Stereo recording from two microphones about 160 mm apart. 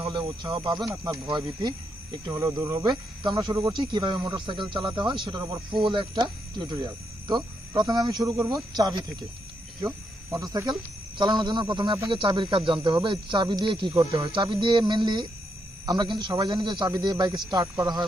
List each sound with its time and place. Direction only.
0.0 s speech: 25° right (ahead or behind)
10.3 s speech: 20° right (ahead or behind)